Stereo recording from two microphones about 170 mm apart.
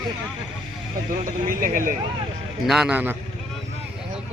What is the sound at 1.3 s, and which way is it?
Speech, 55° right (ahead or behind).